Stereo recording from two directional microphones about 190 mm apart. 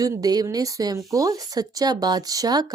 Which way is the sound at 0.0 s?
20° right (ahead or behind).